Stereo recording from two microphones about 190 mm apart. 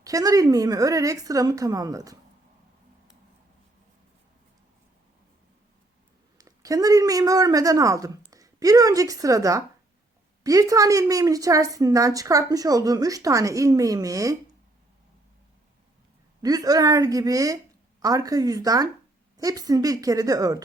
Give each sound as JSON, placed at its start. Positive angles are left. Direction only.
{"t": 0.0, "sound": "a woman's voice", "side_deg": -20}
{"t": 6.3, "sound": "a woman's voice", "side_deg": -20}
{"t": 16.4, "sound": "a woman's voice", "side_deg": -20}